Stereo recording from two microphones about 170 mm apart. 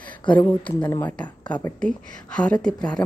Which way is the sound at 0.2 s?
30° left (ahead or behind).